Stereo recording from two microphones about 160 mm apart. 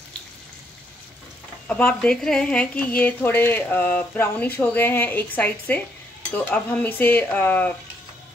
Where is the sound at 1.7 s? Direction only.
5° left (ahead or behind).